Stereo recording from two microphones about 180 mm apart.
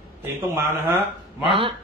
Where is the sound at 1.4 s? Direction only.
30° right (ahead or behind).